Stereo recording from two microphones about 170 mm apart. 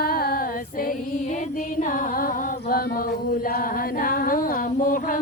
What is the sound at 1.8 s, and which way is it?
Carnatic music, 50° left (ahead or behind).